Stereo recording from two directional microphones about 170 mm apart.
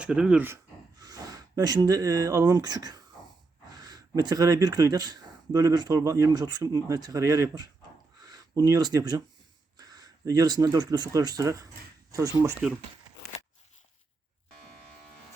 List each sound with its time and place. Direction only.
0.0 s speech: 5° right (ahead or behind)